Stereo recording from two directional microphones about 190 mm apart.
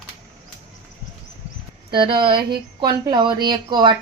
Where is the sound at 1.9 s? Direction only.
25° right (ahead or behind).